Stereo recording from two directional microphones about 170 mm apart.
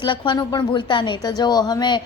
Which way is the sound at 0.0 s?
30° left (ahead or behind).